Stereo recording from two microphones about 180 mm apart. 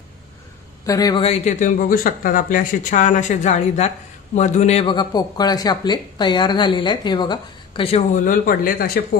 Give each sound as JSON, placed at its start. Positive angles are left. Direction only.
{"t": 0.8, "sound": "speech", "side_deg": 20}
{"t": 1.2, "sound": "speech", "side_deg": 40}
{"t": 8.2, "sound": "speech", "side_deg": 50}